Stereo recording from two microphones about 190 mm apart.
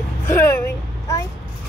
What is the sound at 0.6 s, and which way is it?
Speech, 15° left (ahead or behind).